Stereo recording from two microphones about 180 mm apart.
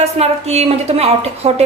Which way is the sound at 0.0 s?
35° right (ahead or behind).